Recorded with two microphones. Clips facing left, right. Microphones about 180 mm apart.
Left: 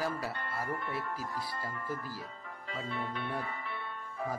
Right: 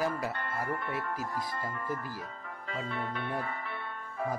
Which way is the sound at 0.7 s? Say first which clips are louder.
Right 1 dB; 75° right (ahead or behind).